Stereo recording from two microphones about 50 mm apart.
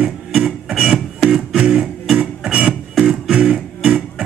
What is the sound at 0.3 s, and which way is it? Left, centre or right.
Music, centre.